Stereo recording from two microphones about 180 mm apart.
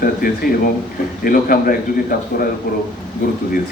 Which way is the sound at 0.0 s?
50° left (ahead or behind).